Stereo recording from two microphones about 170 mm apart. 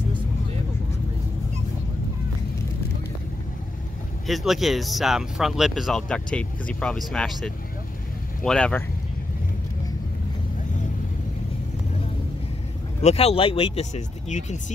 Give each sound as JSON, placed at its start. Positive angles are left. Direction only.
{"t": 4.3, "sound": "speech", "side_deg": 0}
{"t": 13.0, "sound": "speech", "side_deg": 35}